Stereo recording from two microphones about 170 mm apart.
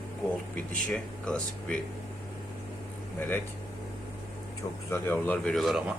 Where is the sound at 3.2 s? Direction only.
10° left (ahead or behind).